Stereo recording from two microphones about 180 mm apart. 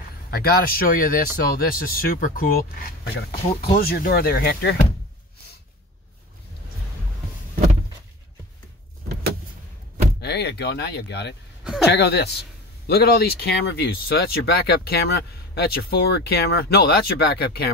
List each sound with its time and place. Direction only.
0.3 s a man's voice: 60° left (ahead or behind)
10.2 s a man's voice: 65° left (ahead or behind)